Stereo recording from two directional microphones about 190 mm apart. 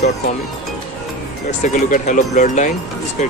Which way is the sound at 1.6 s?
40° left (ahead or behind).